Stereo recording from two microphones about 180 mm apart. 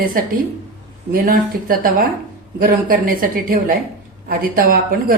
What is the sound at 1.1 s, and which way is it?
Speech, 50° right (ahead or behind).